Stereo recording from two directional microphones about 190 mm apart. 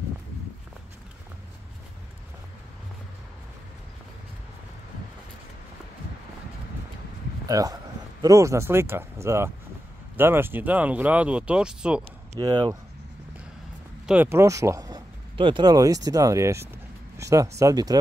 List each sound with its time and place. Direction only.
7.4 s speech: 20° right (ahead or behind)
12.4 s speech: 25° right (ahead or behind)
14.0 s speech: 10° right (ahead or behind)